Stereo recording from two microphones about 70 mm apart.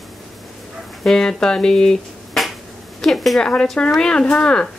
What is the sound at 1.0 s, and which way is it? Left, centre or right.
Speech, centre.